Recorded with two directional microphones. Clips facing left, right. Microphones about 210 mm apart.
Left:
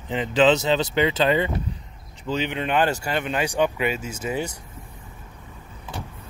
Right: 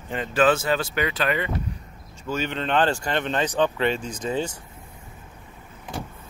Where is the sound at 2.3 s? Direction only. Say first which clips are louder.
Left 1 dB; 15° left (ahead or behind).